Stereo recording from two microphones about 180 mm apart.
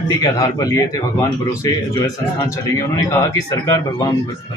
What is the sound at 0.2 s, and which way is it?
A man's voice, 20° left (ahead or behind).